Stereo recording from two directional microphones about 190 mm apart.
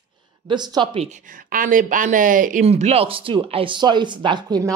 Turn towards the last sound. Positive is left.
turn(degrees=-20)  # may be behind; listen again after turning